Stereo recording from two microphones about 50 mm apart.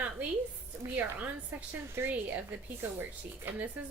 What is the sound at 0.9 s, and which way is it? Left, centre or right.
Speech, right.